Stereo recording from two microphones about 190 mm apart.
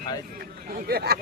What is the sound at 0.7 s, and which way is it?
Speech, 55° right (ahead or behind).